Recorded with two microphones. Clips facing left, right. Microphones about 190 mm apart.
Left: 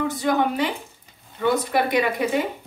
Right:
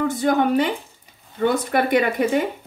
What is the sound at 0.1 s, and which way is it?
Speech, 50° right (ahead or behind).